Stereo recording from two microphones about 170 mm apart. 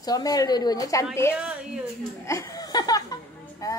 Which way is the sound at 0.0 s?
20° left (ahead or behind).